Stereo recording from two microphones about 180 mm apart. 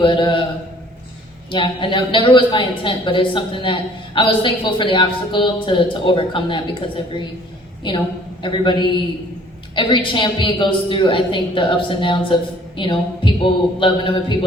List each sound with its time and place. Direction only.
0.0 s a woman's voice: 25° left (ahead or behind)
1.5 s a woman's voice: 25° left (ahead or behind)